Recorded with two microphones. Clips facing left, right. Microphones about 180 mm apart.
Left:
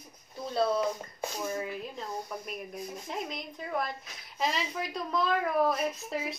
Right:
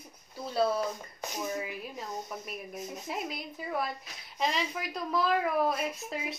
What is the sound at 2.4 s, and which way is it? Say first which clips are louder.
A woman's voice: left 1 dB; 5° right (ahead or behind).